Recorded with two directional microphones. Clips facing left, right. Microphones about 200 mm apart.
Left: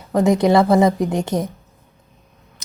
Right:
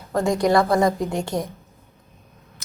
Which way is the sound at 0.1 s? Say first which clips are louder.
Left 4 dB; 20° left (ahead or behind).